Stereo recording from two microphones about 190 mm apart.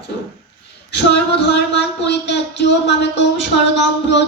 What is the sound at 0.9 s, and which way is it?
Speech, 65° left (ahead or behind).